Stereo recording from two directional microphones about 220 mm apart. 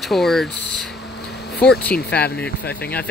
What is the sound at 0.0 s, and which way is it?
Speech, centre (ahead or behind).